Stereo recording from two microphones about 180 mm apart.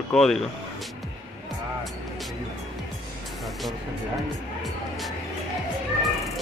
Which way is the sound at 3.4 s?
Centre (ahead or behind).